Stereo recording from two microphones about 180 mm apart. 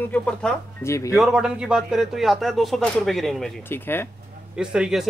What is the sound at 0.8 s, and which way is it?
Speech, 15° left (ahead or behind).